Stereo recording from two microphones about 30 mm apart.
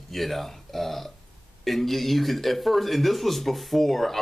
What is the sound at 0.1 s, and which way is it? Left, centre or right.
Speech, centre.